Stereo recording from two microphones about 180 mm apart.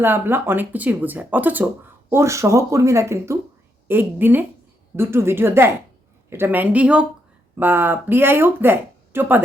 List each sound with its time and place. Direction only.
0.0 s speech: 10° right (ahead or behind)